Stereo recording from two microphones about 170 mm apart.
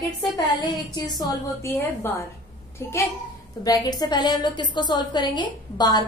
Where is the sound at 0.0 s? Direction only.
Centre (ahead or behind).